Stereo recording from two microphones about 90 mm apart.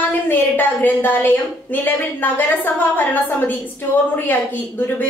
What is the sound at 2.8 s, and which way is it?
Speech, 20° left (ahead or behind).